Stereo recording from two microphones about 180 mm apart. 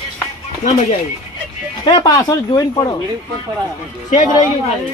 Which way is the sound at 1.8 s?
25° left (ahead or behind).